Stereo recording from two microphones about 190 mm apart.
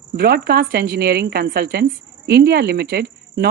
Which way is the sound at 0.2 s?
55° right (ahead or behind).